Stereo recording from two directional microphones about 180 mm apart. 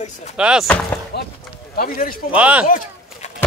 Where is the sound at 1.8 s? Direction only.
55° left (ahead or behind).